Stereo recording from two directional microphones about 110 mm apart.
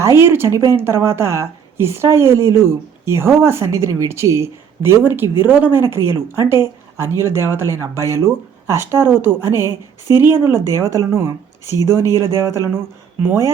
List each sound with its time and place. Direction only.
0.2 s speech: 20° right (ahead or behind)